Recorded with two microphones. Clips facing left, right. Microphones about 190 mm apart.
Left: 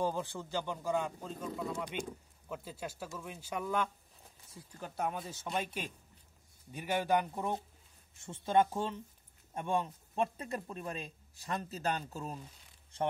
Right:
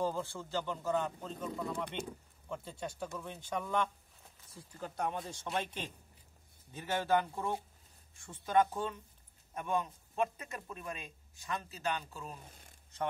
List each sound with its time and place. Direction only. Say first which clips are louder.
0.0 s speech: left 1 dB; 15° left (ahead or behind)
4.9 s a man's voice: left 1 dB; 5° left (ahead or behind); by 12.4 s 40° left (ahead or behind)
12.4 s speech: right 2 dB; 50° right (ahead or behind)